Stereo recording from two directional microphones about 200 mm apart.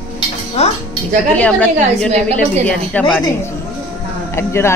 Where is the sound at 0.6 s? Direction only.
30° left (ahead or behind).